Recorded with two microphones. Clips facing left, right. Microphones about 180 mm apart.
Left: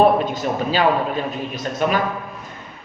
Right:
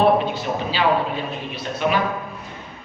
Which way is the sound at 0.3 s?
45° left (ahead or behind).